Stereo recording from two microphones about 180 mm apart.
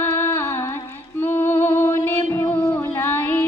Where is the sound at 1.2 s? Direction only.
10° left (ahead or behind).